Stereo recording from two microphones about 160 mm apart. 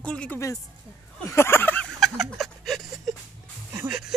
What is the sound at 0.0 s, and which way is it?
A woman's voice, 5° left (ahead or behind).